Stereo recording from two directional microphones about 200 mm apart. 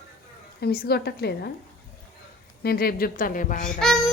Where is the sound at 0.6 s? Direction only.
50° left (ahead or behind).